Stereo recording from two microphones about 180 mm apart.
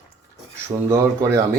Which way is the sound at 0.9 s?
15° right (ahead or behind).